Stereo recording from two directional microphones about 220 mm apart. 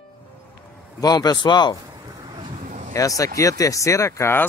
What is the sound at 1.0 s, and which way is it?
Speech, 15° left (ahead or behind).